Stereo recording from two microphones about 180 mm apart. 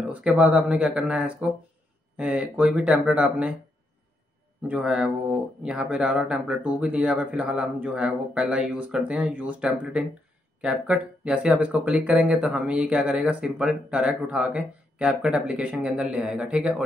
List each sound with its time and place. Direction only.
0.0 s speech: 5° right (ahead or behind)
4.6 s speech: 5° right (ahead or behind)